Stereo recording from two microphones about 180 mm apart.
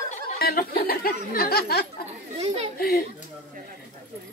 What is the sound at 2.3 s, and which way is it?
Chatter, 35° right (ahead or behind).